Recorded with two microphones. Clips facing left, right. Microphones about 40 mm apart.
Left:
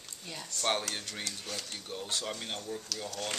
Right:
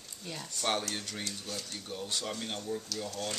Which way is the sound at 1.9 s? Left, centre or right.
Centre.